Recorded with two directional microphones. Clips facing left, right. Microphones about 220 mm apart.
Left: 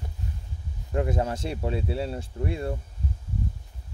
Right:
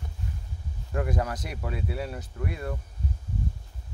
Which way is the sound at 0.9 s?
25° left (ahead or behind).